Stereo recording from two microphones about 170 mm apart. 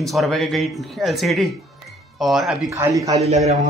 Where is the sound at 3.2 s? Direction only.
40° right (ahead or behind).